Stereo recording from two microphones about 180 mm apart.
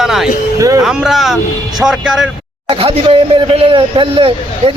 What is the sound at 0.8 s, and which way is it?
A man's voice, 5° right (ahead or behind).